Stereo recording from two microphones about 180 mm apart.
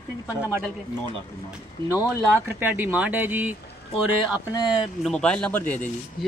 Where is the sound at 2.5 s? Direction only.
10° right (ahead or behind).